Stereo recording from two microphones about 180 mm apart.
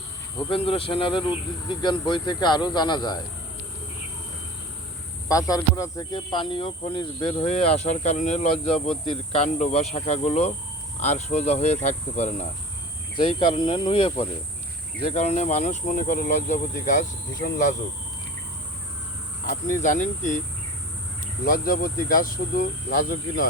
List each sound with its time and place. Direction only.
0.5 s speech: 30° left (ahead or behind)
5.3 s speech: 20° left (ahead or behind); by 12.5 s 40° left (ahead or behind)
13.1 s speech: 30° left (ahead or behind); by 17.7 s 45° left (ahead or behind)
19.5 s speech: 45° left (ahead or behind)
21.4 s speech: 50° left (ahead or behind)